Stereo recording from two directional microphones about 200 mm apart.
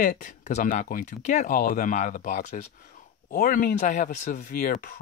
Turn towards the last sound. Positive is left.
turn(degrees=45)  # may be behind; listen again after turning